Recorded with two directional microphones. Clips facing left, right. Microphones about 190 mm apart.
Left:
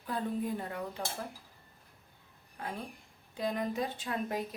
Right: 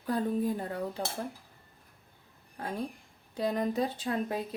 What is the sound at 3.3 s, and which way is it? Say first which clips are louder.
Speech: right 4 dB; 35° right (ahead or behind).